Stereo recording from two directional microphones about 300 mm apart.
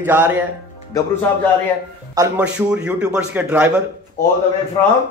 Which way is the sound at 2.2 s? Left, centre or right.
Centre.